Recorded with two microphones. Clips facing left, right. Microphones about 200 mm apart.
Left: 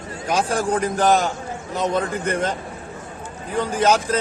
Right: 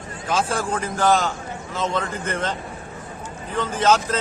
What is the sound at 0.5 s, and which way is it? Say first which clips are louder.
A man's voice: left 4 dB; 15° left (ahead or behind).